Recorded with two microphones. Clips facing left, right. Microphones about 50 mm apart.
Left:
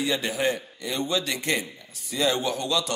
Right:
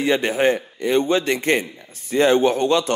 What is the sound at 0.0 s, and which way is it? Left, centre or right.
A man's voice, right.